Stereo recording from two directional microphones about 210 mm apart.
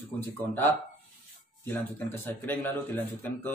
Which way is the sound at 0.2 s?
10° left (ahead or behind).